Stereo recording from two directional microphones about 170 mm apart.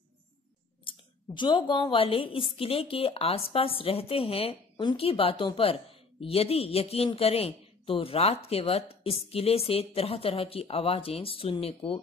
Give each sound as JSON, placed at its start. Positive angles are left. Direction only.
{"t": 0.8, "sound": "speech", "side_deg": 25}